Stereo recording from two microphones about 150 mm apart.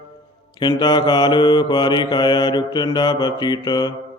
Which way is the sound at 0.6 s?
30° left (ahead or behind).